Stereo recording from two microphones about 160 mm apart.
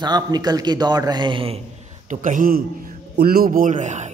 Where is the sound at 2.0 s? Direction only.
55° right (ahead or behind).